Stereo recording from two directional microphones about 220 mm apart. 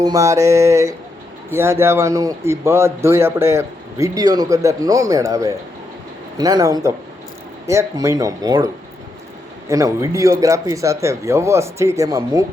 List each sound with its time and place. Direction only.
0.0 s a man's voice: 15° right (ahead or behind)